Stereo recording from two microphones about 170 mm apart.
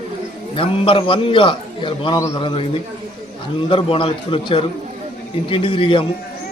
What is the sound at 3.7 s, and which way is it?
A man's voice, 30° left (ahead or behind).